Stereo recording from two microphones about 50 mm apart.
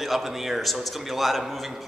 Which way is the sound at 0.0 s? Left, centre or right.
Centre.